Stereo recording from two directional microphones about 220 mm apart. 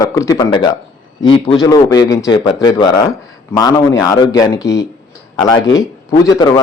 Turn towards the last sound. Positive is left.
turn(degrees=20)  # may be behind; listen again after turning